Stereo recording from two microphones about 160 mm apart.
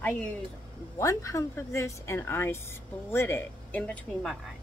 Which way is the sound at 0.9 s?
20° left (ahead or behind).